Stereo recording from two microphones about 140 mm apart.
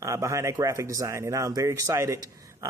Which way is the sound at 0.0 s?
20° right (ahead or behind).